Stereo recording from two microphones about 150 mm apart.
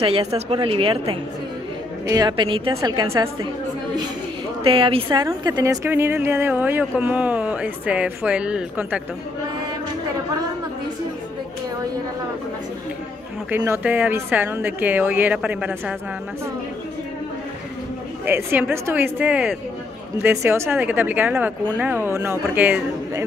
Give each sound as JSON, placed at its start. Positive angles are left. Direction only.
{"t": 0.0, "sound": "a woman's voice", "side_deg": -40}
{"t": 4.6, "sound": "a woman's voice", "side_deg": -35}
{"t": 5.2, "sound": "speech", "side_deg": -25}
{"t": 13.5, "sound": "speech", "side_deg": -10}
{"t": 18.2, "sound": "speech", "side_deg": -15}